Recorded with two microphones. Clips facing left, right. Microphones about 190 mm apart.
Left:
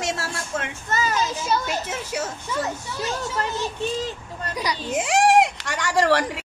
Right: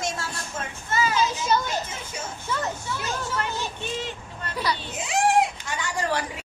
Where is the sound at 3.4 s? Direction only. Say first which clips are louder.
Left 4 dB; 40° left (ahead or behind).